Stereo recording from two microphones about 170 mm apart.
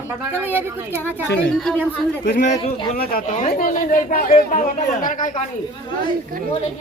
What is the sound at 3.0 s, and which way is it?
Speech, 60° left (ahead or behind).